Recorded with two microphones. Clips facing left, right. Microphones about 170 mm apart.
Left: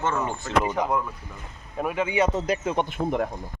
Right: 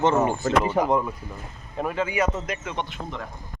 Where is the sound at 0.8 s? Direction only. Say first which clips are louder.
Right 4 dB; 25° right (ahead or behind).